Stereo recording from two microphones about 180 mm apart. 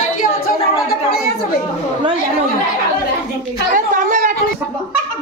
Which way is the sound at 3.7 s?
45° right (ahead or behind).